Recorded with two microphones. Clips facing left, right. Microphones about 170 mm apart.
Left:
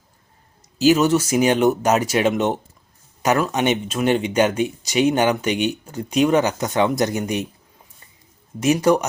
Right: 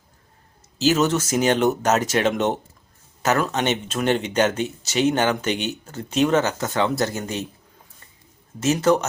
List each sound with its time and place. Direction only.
0.8 s speech: 10° left (ahead or behind)
8.6 s speech: 15° left (ahead or behind)